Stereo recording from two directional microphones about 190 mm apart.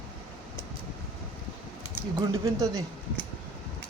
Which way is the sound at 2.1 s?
20° right (ahead or behind).